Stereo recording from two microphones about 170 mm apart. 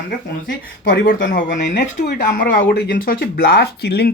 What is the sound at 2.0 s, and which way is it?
Speech, 60° left (ahead or behind).